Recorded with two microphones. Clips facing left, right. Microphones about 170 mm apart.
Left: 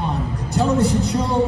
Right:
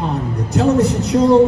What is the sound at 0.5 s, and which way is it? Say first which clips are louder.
Speech: right 3 dB; 65° right (ahead or behind).